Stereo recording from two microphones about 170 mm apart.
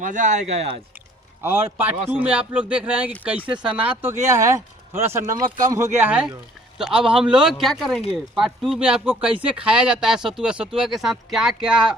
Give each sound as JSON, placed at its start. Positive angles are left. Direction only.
{"t": 0.0, "sound": "speech", "side_deg": -45}
{"t": 1.4, "sound": "a man's voice", "side_deg": -15}